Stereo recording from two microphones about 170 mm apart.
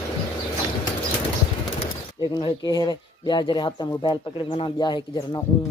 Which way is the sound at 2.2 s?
25° left (ahead or behind).